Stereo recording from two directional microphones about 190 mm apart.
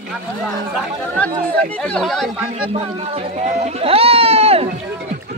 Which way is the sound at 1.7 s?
5° left (ahead or behind).